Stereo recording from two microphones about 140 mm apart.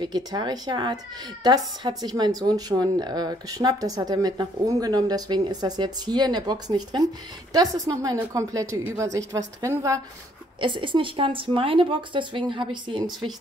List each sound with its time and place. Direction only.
0.0 s a woman's voice: 30° right (ahead or behind)
10.6 s a woman's voice: 35° right (ahead or behind)